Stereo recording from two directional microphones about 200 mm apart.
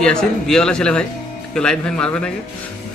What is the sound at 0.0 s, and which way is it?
A man's voice, 5° left (ahead or behind).